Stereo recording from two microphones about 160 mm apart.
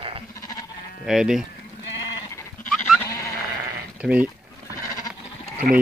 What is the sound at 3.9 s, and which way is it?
Speech, 10° right (ahead or behind).